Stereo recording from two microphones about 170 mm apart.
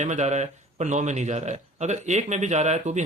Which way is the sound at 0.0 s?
45° right (ahead or behind).